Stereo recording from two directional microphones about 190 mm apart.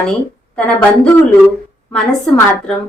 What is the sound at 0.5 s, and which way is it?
A woman's voice, 5° left (ahead or behind).